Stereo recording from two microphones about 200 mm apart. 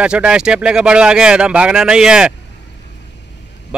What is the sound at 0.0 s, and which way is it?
Speech, 5° right (ahead or behind).